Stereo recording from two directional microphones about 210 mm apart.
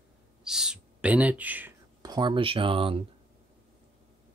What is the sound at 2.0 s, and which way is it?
Speech, 20° right (ahead or behind).